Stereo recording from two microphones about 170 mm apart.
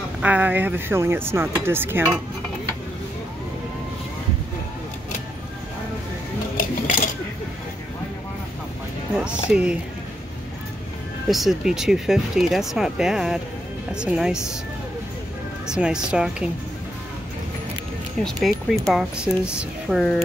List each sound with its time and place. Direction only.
0.2 s speech: 10° right (ahead or behind)
6.5 s a sound: 55° left (ahead or behind)
9.1 s speech: 5° right (ahead or behind)
11.2 s speech: centre (ahead or behind)
15.6 s speech: 5° right (ahead or behind)
18.2 s speech: centre (ahead or behind)